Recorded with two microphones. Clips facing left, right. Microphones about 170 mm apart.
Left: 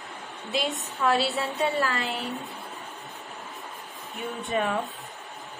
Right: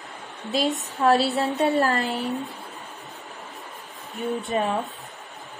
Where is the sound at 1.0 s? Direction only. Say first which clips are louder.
Right 5 dB; 40° right (ahead or behind).